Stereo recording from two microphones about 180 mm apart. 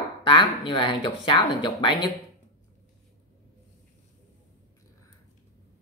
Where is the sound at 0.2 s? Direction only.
25° left (ahead or behind).